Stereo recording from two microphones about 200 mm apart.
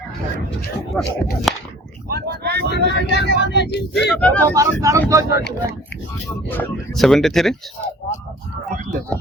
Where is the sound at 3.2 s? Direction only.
60° left (ahead or behind).